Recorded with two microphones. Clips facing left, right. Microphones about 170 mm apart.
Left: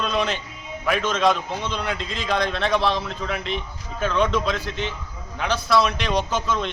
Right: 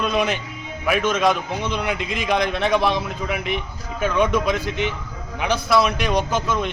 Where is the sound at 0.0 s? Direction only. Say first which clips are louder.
Right 3 dB; 10° right (ahead or behind).